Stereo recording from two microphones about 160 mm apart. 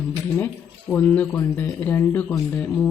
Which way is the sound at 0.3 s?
15° left (ahead or behind).